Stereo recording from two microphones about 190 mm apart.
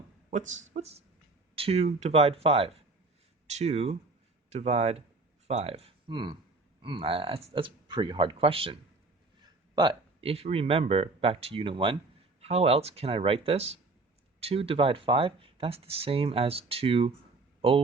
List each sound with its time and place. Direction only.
0.3 s speech: 40° right (ahead or behind)
10.2 s speech: 30° right (ahead or behind)